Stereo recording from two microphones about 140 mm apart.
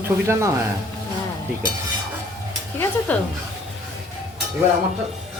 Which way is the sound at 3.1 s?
10° left (ahead or behind).